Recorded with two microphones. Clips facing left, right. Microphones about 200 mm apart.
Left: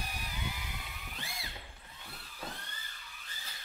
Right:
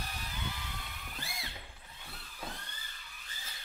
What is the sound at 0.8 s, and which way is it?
Music, centre (ahead or behind).